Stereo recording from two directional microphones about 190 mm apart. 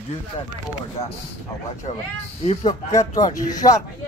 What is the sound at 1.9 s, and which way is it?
Speech, 30° left (ahead or behind).